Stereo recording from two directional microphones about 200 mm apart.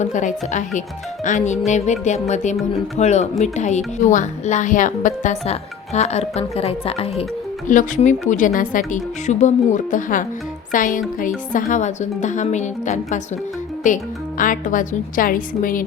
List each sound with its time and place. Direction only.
0.0 s speech: 40° left (ahead or behind)
2.6 s speech: centre (ahead or behind)
3.0 s a woman's voice: 35° left (ahead or behind)